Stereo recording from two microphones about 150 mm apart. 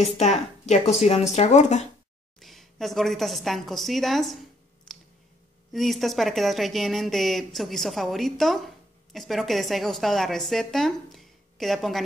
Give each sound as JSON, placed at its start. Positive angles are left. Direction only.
{"t": 0.2, "sound": "speech", "side_deg": 50}
{"t": 2.4, "sound": "a woman's voice", "side_deg": 0}
{"t": 4.9, "sound": "clicking", "side_deg": 5}
{"t": 5.7, "sound": "speech", "side_deg": 0}